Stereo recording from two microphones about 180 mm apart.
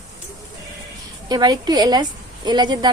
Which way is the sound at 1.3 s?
20° right (ahead or behind).